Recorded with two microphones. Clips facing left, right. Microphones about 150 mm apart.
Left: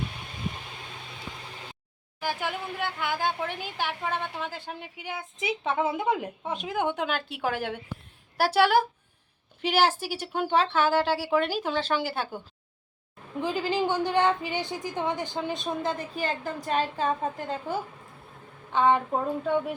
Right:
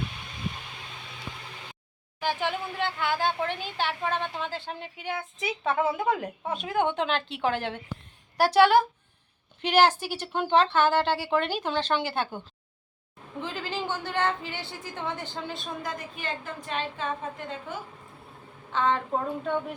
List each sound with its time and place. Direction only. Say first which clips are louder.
2.2 s a woman's voice: right 2 dB; 10° left (ahead or behind)
13.4 s a woman's voice: left 6 dB; 15° left (ahead or behind); by 17.7 s 35° left (ahead or behind)
18.7 s a woman's voice: left 4 dB; 15° left (ahead or behind)